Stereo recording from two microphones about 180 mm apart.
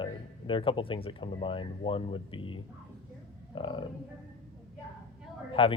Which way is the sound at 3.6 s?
30° left (ahead or behind).